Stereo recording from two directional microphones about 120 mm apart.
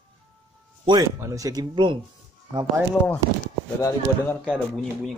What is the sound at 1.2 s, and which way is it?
Speech, 25° right (ahead or behind).